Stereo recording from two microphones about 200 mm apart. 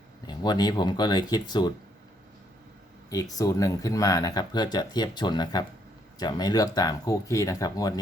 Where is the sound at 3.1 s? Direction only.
15° left (ahead or behind).